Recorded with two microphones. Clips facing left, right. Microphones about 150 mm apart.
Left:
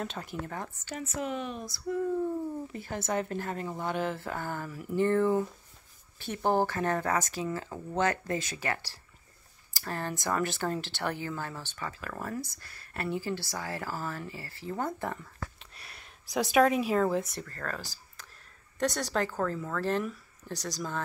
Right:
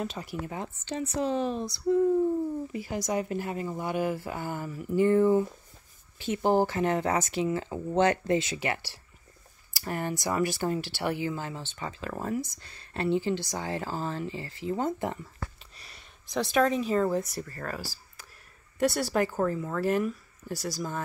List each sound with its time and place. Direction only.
0.0 s speech: 5° right (ahead or behind)
0.8 s speech: 30° right (ahead or behind)
3.1 s speech: 10° right (ahead or behind)
9.8 s speech: 15° right (ahead or behind)
15.7 s speech: centre (ahead or behind)